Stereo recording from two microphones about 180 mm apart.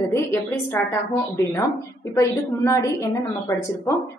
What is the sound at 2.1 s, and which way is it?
A woman's voice, 15° left (ahead or behind).